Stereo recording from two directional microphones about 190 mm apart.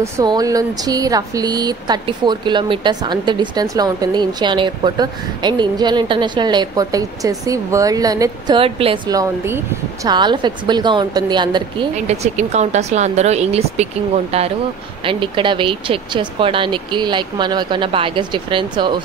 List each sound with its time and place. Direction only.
0.0 s speech: 20° right (ahead or behind)
12.1 s speech: 35° right (ahead or behind)
15.0 s speech: 25° right (ahead or behind)